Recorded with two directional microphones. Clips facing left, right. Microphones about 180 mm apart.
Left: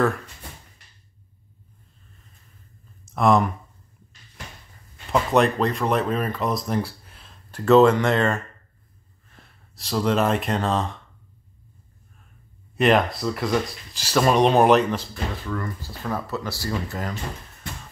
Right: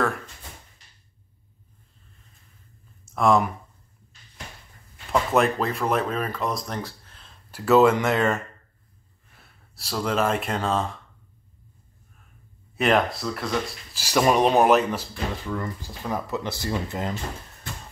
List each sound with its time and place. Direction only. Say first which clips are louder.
3.1 s speech: left 1 dB; centre (ahead or behind)
5.1 s speech: left 2 dB; centre (ahead or behind)
7.5 s speech: left 2 dB; 5° right (ahead or behind)
12.7 s speech: left 2 dB; centre (ahead or behind)
14.0 s speech: left 1 dB; 10° right (ahead or behind)